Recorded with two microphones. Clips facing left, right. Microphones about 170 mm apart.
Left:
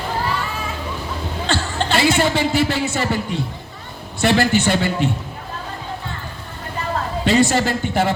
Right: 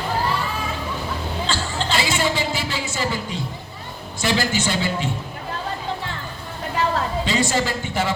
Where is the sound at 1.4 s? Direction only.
60° left (ahead or behind).